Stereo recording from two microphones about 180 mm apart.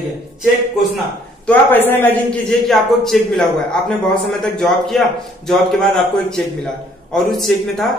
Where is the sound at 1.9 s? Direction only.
10° left (ahead or behind).